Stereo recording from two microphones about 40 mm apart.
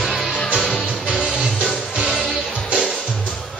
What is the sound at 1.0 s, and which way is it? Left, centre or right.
Music, centre.